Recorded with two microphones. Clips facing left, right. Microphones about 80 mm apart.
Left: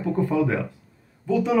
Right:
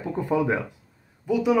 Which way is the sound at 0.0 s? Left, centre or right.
Centre.